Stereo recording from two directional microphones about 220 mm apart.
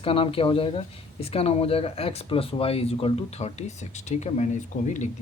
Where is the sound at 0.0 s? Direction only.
25° left (ahead or behind).